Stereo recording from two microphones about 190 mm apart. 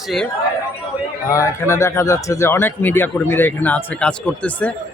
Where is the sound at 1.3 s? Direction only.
15° left (ahead or behind).